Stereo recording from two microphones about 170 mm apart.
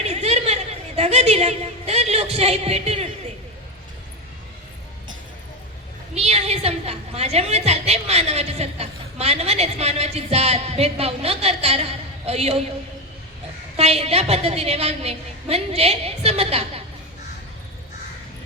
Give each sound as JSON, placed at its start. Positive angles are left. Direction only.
{"t": 0.0, "sound": "a sound", "side_deg": -40}
{"t": 6.1, "sound": "a woman's voice", "side_deg": -40}
{"t": 13.7, "sound": "a woman's voice", "side_deg": -35}